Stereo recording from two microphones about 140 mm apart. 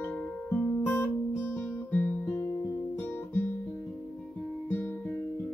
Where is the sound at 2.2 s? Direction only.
20° left (ahead or behind).